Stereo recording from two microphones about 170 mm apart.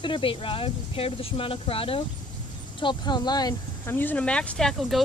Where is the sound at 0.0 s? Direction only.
30° left (ahead or behind).